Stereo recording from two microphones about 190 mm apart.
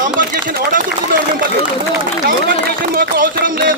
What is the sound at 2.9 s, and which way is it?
Speech, 50° right (ahead or behind).